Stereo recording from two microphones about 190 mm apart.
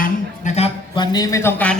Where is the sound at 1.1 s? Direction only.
20° left (ahead or behind).